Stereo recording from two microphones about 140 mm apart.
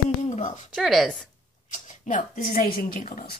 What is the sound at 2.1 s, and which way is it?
Speech, 90° left.